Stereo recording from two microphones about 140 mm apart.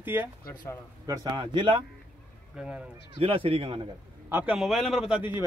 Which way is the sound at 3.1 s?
40° right (ahead or behind).